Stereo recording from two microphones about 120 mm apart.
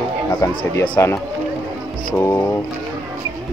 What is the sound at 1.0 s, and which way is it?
Speech, 20° left (ahead or behind).